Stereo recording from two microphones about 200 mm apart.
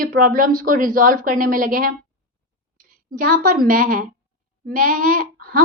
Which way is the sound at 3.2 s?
45° right (ahead or behind).